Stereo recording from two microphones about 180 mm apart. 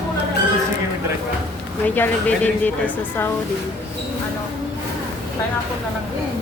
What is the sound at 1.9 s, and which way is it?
Speech, 10° left (ahead or behind).